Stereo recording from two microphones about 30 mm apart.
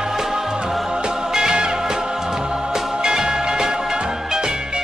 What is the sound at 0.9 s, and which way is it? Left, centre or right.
Music, right.